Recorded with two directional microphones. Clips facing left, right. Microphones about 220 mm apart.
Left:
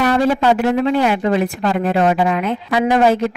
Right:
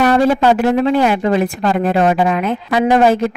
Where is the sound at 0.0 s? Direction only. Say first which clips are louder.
Right 3 dB; 45° right (ahead or behind).